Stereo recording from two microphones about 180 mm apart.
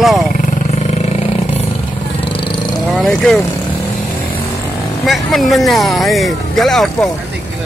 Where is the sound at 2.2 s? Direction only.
30° left (ahead or behind).